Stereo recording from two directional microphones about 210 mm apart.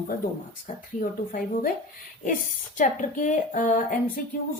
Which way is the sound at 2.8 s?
35° left (ahead or behind).